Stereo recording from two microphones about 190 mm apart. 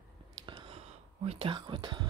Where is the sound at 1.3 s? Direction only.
30° right (ahead or behind).